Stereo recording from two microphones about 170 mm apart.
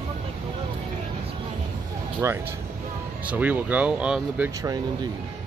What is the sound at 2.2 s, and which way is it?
Speech, 15° right (ahead or behind).